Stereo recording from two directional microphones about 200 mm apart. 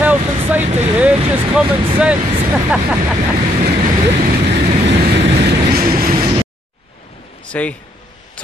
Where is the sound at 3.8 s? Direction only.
40° right (ahead or behind).